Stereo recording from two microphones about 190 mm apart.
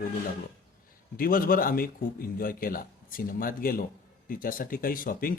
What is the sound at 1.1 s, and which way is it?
Speech, 50° left (ahead or behind).